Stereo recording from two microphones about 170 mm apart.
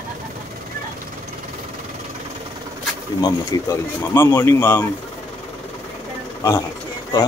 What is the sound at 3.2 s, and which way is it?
Speech, 15° left (ahead or behind).